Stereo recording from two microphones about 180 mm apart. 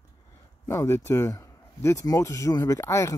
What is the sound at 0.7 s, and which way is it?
Speech, 15° left (ahead or behind).